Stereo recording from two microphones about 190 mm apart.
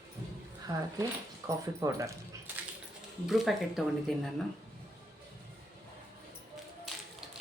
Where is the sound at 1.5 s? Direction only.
15° right (ahead or behind).